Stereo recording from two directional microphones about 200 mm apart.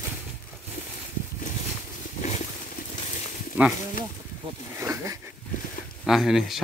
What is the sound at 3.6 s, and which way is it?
Speech, 10° right (ahead or behind).